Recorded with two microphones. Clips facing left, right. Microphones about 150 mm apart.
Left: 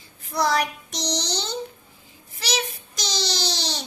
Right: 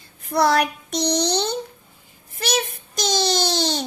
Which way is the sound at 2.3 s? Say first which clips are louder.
Right 4 dB; 55° right (ahead or behind).